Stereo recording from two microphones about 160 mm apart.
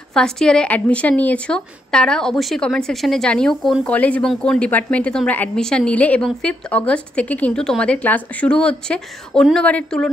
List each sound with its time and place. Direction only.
0.1 s speech: 5° left (ahead or behind)